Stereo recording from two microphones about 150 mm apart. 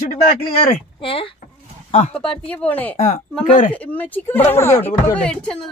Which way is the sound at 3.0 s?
60° left (ahead or behind).